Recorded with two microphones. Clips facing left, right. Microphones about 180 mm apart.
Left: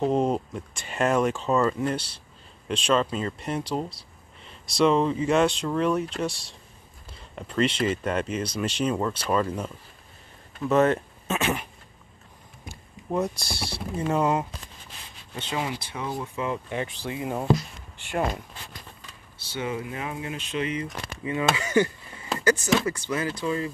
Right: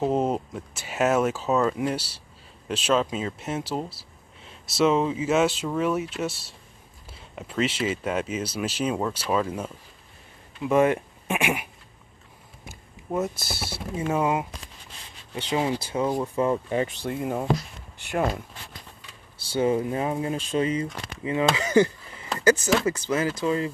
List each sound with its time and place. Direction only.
0.0 s speech: 5° right (ahead or behind)
15.5 s speech: 30° right (ahead or behind); by 17.2 s 50° right (ahead or behind)
19.5 s speech: 35° right (ahead or behind)